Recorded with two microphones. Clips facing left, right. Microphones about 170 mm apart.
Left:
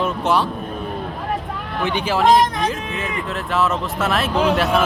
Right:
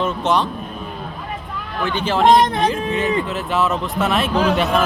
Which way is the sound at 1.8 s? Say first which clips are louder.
Right 1 dB; 15° left (ahead or behind).